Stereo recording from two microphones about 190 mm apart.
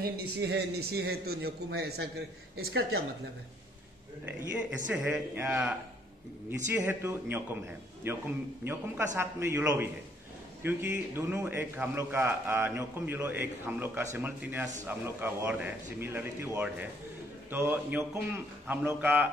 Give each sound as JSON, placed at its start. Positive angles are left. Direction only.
{"t": 0.0, "sound": "speech", "side_deg": -60}
{"t": 4.3, "sound": "a man's voice", "side_deg": -10}